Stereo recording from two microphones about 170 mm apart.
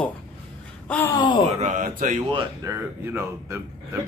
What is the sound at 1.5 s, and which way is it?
Speech, 45° right (ahead or behind).